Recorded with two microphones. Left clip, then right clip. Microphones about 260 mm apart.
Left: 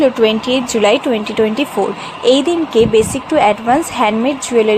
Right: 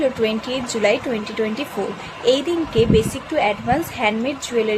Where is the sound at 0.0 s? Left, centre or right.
Centre.